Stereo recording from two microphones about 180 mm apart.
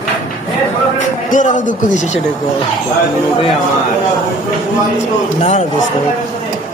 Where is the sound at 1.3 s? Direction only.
45° left (ahead or behind).